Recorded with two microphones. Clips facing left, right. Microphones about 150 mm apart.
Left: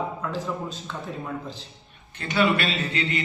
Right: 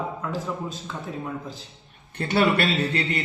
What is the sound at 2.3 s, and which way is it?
Speech, 35° right (ahead or behind).